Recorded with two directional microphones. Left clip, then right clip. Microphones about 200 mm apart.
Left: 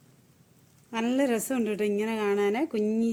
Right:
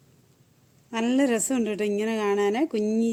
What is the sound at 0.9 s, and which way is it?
A woman's voice, 40° right (ahead or behind).